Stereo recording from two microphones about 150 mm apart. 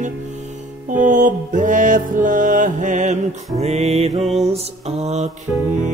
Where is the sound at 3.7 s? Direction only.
45° right (ahead or behind).